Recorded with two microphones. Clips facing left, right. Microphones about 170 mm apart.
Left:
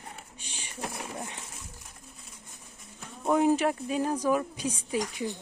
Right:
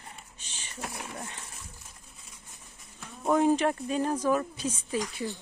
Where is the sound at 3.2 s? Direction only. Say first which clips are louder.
Even; 10° left (ahead or behind).